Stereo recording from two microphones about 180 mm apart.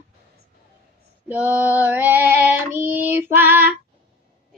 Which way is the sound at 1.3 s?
10° right (ahead or behind).